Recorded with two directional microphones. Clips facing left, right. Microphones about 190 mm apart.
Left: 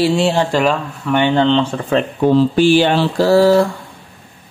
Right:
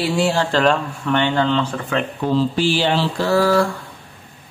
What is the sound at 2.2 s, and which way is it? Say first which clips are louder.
Speech: left 7 dB; 55° left (ahead or behind).